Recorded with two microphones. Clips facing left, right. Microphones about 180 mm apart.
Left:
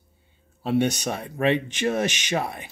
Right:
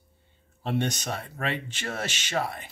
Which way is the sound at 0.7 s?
10° left (ahead or behind).